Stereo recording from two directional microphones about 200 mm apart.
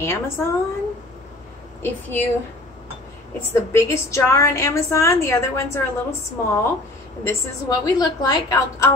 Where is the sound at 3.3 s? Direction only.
15° left (ahead or behind).